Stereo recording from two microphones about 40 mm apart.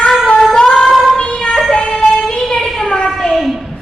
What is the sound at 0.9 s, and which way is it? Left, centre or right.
Child singing, centre.